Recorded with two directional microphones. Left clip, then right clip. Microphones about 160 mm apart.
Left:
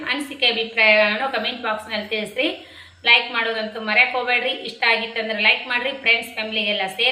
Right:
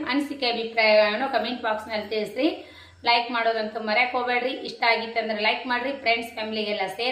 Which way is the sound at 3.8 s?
15° right (ahead or behind).